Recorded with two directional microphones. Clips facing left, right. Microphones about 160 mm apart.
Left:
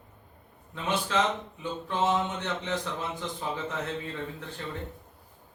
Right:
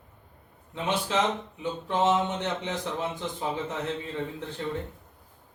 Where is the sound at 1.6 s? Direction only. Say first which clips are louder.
Right 3 dB; 20° right (ahead or behind).